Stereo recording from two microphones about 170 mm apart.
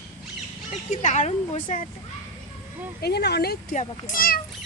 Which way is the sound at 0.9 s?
45° left (ahead or behind).